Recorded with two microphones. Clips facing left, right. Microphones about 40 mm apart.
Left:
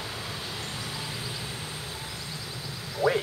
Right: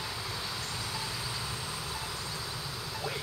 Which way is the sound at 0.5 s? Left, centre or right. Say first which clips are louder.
Left 2 dB; left.